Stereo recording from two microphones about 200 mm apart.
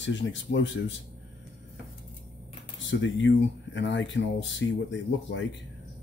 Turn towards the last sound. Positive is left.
turn(degrees=65)  # may be behind; listen again after turning